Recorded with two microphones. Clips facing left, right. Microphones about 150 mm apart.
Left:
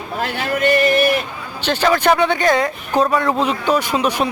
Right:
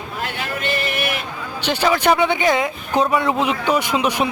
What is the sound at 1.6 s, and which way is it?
A man's voice, 10° right (ahead or behind).